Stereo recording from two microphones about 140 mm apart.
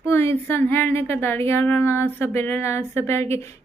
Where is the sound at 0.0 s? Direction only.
15° left (ahead or behind).